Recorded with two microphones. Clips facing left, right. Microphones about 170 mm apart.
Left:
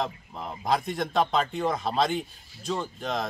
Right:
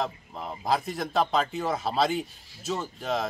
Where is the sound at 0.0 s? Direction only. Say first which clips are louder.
Even; centre (ahead or behind).